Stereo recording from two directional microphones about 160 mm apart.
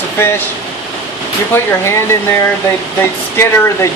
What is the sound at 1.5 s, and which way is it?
Speech, 15° left (ahead or behind).